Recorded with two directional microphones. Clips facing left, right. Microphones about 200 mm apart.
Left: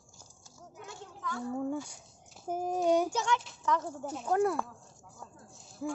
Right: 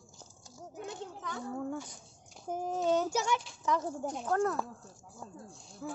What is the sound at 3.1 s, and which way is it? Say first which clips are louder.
Speech: even; 10° right (ahead or behind).